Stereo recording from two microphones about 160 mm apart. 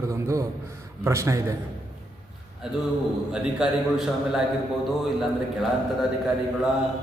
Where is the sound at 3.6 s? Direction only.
5° right (ahead or behind).